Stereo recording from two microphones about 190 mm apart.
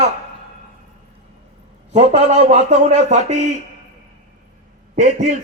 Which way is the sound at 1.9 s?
35° right (ahead or behind).